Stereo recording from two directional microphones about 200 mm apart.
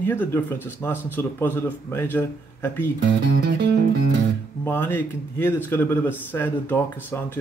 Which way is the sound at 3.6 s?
60° right (ahead or behind).